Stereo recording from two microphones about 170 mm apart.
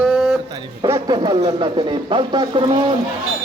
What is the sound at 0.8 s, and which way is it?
Speech, 25° right (ahead or behind).